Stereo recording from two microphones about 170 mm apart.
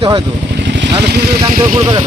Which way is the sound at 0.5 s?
90° right.